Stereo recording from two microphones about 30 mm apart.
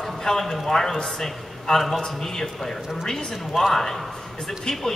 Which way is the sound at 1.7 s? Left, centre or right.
Centre.